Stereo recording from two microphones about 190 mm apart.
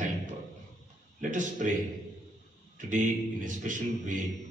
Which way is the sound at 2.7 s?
40° right (ahead or behind).